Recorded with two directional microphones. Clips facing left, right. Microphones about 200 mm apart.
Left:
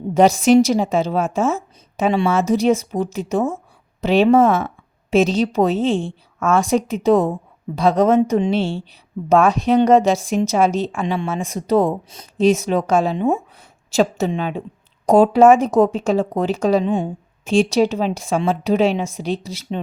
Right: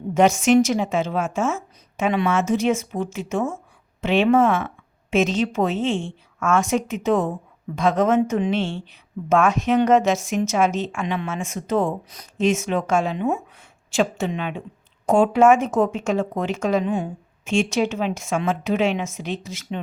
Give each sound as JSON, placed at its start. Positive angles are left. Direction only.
{"t": 0.1, "sound": "speech", "side_deg": 35}